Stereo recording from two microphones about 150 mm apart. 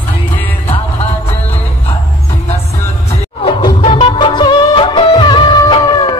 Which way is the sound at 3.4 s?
40° left (ahead or behind).